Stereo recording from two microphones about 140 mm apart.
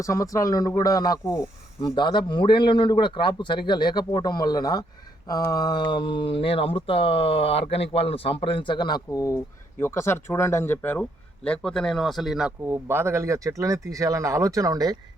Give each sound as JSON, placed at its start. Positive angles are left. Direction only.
{"t": 0.0, "sound": "speech", "side_deg": 25}
{"t": 2.0, "sound": "speech", "side_deg": 30}
{"t": 12.6, "sound": "speech", "side_deg": -15}